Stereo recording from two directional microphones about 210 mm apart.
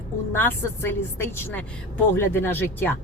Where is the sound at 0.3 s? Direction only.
10° left (ahead or behind).